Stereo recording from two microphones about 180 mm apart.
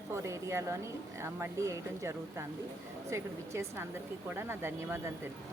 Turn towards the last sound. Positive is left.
turn(degrees=-15)  # may be behind; listen again after turning